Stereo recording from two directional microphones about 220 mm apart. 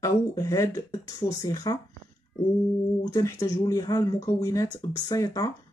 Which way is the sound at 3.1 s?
15° left (ahead or behind).